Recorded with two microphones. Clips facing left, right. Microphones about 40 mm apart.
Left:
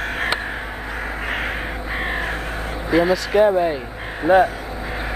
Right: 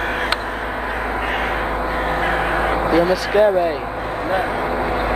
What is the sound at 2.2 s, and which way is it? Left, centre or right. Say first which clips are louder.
Crow: right 8 dB; right.